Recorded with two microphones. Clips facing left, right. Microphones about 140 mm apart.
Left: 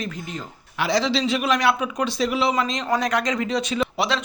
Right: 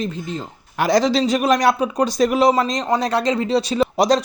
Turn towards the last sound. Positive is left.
turn(degrees=-40)  # may be behind; listen again after turning